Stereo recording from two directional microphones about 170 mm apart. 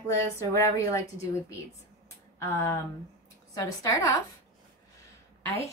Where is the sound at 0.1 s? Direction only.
15° left (ahead or behind).